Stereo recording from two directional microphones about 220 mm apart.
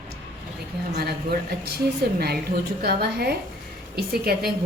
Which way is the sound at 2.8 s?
45° right (ahead or behind).